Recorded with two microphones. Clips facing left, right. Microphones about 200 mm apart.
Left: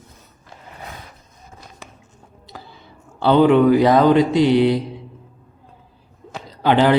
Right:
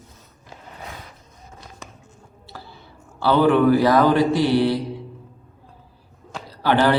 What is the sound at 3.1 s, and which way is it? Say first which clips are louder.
A man's voice: left 3 dB; 20° left (ahead or behind).